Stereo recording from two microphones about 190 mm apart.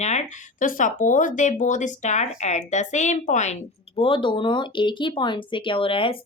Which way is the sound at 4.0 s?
25° left (ahead or behind).